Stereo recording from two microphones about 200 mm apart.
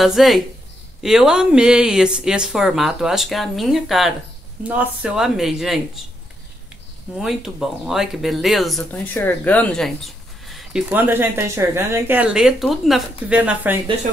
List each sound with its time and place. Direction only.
0.0 s speech: centre (ahead or behind)
7.2 s speech: centre (ahead or behind)